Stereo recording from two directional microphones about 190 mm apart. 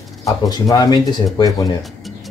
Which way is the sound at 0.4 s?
20° left (ahead or behind).